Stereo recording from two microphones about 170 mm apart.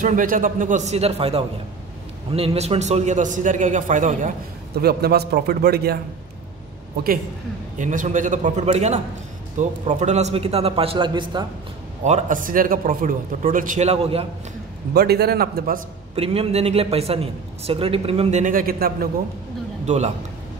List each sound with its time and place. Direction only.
0.0 s speech: 50° right (ahead or behind)
4.7 s a man's voice: 65° right (ahead or behind)
7.7 s a man's voice: 50° right (ahead or behind); by 11.4 s 30° right (ahead or behind)
12.0 s speech: 45° right (ahead or behind)
15.0 s a man's voice: 65° right (ahead or behind)
16.2 s a man's voice: 35° right (ahead or behind)
18.4 s a man's voice: 55° right (ahead or behind)
19.9 s speech: 45° right (ahead or behind)